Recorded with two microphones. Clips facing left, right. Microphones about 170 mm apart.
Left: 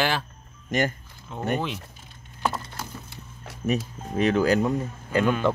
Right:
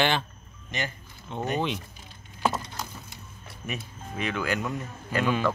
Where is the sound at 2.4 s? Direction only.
15° right (ahead or behind).